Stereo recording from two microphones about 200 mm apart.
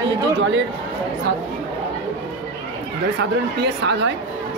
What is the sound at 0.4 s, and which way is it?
Speech, 65° right (ahead or behind).